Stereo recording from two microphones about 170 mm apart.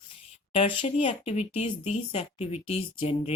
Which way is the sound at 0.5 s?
30° left (ahead or behind).